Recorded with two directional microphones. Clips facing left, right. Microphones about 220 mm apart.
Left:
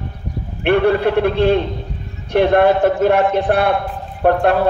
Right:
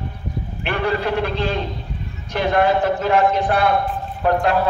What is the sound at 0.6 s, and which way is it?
A man's voice, 60° left (ahead or behind).